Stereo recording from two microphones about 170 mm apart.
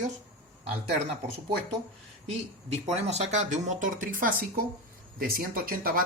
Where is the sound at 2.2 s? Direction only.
40° right (ahead or behind).